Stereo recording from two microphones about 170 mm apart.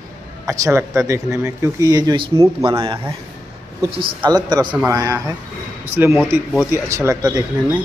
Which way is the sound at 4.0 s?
25° right (ahead or behind).